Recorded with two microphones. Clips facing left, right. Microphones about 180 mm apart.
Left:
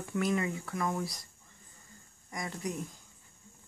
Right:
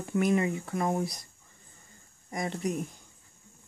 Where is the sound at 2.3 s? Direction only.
30° right (ahead or behind).